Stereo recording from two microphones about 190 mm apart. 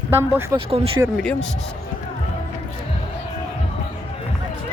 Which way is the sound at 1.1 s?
5° left (ahead or behind).